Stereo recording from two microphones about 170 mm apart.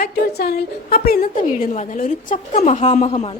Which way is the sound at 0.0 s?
70° left (ahead or behind).